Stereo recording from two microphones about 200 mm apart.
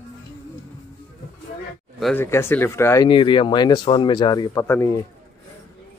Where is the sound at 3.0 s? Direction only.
25° left (ahead or behind).